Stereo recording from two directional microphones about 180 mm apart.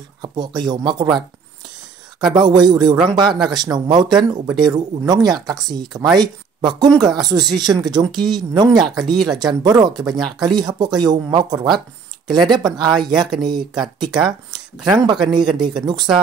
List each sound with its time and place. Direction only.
0.2 s speech: 25° right (ahead or behind)
2.1 s speech: 25° right (ahead or behind)
14.1 s speech: 5° right (ahead or behind)
15.0 s speech: 25° right (ahead or behind)